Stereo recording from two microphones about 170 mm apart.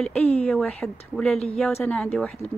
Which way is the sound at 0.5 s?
Centre (ahead or behind).